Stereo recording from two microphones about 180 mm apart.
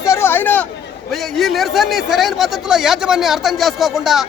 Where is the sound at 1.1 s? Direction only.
Centre (ahead or behind).